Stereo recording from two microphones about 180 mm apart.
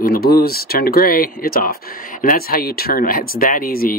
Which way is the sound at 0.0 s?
55° left (ahead or behind).